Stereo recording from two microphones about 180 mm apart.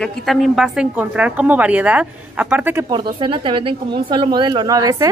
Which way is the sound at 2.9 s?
25° right (ahead or behind).